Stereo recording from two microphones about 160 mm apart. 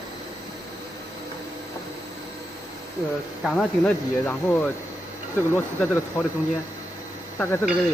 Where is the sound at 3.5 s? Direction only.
10° left (ahead or behind).